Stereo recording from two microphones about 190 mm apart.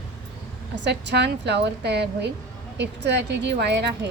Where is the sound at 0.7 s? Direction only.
65° right (ahead or behind).